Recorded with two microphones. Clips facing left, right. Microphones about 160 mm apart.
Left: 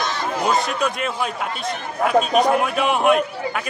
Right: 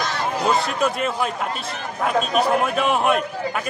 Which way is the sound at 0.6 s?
Centre (ahead or behind).